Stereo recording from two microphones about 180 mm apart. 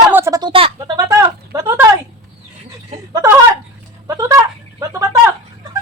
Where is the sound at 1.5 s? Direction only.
20° right (ahead or behind).